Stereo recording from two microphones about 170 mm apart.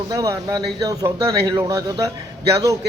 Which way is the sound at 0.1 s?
20° right (ahead or behind).